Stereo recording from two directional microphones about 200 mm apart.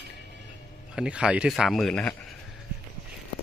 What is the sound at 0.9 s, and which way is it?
Speech, 5° right (ahead or behind).